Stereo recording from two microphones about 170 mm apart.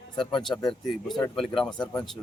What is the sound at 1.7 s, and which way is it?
Speech, 25° left (ahead or behind).